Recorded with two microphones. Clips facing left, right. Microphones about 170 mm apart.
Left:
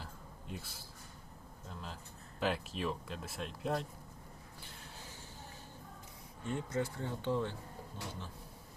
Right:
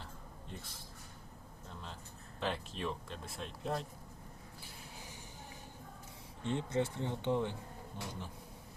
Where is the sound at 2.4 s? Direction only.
5° left (ahead or behind).